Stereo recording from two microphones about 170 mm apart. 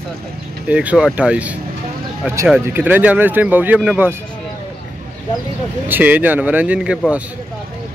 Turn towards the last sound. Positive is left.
turn(degrees=-5)  # may be behind; listen again after turning